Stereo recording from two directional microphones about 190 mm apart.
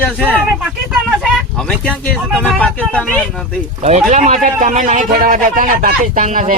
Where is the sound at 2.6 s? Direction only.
5° left (ahead or behind).